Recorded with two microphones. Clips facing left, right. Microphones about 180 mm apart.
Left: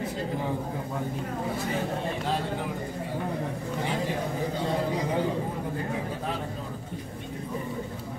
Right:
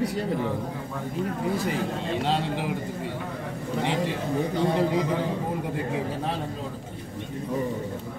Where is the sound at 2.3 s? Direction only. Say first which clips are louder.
Right 4 dB; 80° right.